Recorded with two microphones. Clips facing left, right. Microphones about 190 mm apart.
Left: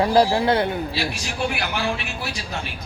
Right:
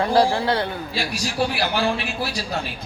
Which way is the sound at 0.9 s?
45° right (ahead or behind).